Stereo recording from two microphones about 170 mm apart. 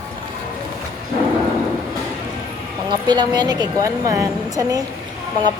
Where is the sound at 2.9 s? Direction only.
25° right (ahead or behind).